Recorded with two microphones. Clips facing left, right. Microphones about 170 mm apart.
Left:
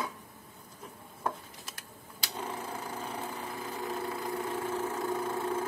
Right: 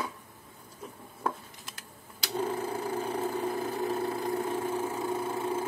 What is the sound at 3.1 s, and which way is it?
Vehicle, 35° right (ahead or behind).